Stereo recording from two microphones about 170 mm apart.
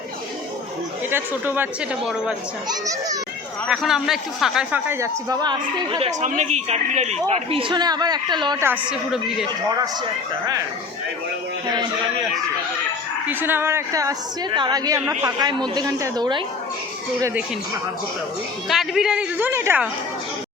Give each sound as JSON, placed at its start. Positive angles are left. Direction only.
{"t": 1.1, "sound": "speech", "side_deg": -10}
{"t": 2.6, "sound": "a woman's voice", "side_deg": -20}
{"t": 3.7, "sound": "speech", "side_deg": -5}
{"t": 6.1, "sound": "a woman's voice", "side_deg": -45}
{"t": 8.9, "sound": "a woman's voice", "side_deg": -5}
{"t": 9.6, "sound": "a woman's voice", "side_deg": -20}
{"t": 13.2, "sound": "a woman's voice", "side_deg": -10}
{"t": 15.0, "sound": "speech", "side_deg": -10}
{"t": 15.7, "sound": "a woman's voice", "side_deg": -20}
{"t": 18.7, "sound": "a woman's voice", "side_deg": 0}